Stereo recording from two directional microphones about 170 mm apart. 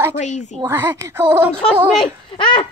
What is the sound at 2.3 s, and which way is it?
Speech, 30° left (ahead or behind).